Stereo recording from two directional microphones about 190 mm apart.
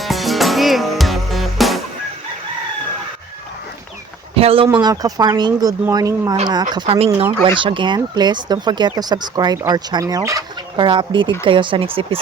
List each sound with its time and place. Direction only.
0.0 s music: centre (ahead or behind)
4.4 s speech: 30° right (ahead or behind)
4.8 s speech: 20° right (ahead or behind)